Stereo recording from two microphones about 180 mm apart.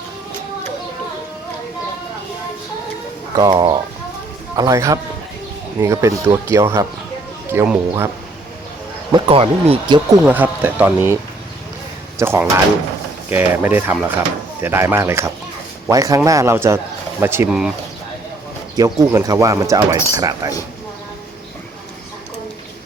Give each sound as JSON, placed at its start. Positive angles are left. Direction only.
{"t": 3.3, "sound": "speech", "side_deg": -20}
{"t": 9.1, "sound": "speech", "side_deg": -30}
{"t": 10.2, "sound": "speech", "side_deg": -10}
{"t": 12.2, "sound": "speech", "side_deg": -15}
{"t": 18.8, "sound": "speech", "side_deg": -20}